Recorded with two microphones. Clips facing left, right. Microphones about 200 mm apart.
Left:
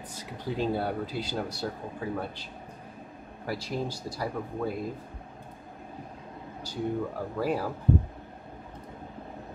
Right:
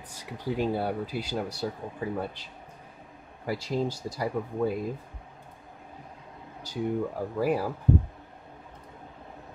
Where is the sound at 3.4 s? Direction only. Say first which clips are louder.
Right 3 dB; 15° right (ahead or behind).